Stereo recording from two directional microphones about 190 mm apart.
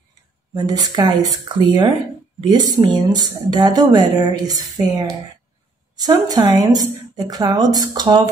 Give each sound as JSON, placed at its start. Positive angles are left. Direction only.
{"t": 0.6, "sound": "speech", "side_deg": -20}